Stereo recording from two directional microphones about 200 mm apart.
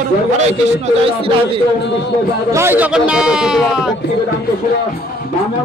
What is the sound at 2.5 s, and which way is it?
A man's voice, 10° right (ahead or behind).